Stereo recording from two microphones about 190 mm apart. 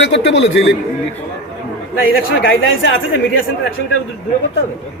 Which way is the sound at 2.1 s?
90° left.